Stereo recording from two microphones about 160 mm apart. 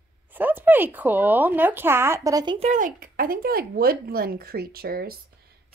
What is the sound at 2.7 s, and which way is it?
A woman's voice, 60° right (ahead or behind).